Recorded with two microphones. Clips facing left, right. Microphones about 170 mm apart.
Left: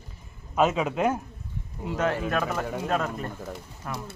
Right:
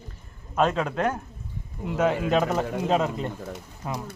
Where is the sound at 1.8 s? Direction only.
10° right (ahead or behind).